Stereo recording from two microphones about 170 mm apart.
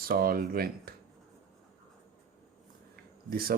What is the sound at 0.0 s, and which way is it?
Speech, 60° right (ahead or behind).